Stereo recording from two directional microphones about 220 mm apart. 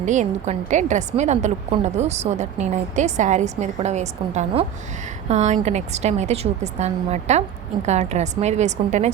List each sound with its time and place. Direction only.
0.0 s a woman's voice: 35° right (ahead or behind)